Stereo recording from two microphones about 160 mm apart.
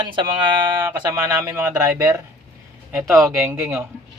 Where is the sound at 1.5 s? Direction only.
15° right (ahead or behind).